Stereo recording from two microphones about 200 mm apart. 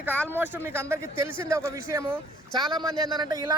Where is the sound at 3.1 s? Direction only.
20° right (ahead or behind).